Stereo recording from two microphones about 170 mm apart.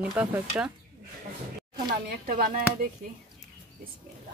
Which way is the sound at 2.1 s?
60° right (ahead or behind).